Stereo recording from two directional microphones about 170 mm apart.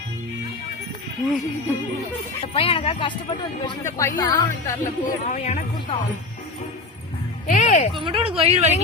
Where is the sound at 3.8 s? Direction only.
15° left (ahead or behind).